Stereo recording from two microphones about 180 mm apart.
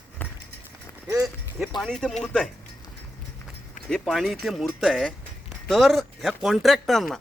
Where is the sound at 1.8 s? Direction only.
5° left (ahead or behind).